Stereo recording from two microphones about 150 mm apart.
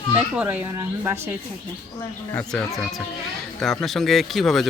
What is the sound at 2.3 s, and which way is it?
A man's voice, 5° left (ahead or behind).